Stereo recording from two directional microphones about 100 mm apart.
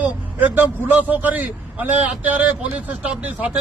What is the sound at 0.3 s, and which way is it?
A man's voice, 15° right (ahead or behind).